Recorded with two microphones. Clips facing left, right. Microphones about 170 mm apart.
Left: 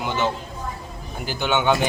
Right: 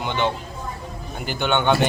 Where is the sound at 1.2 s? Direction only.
Centre (ahead or behind).